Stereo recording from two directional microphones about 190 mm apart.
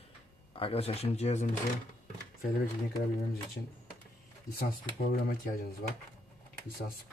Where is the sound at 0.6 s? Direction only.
30° left (ahead or behind).